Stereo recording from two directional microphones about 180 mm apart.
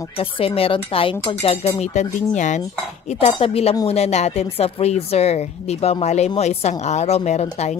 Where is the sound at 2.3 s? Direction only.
45° left (ahead or behind).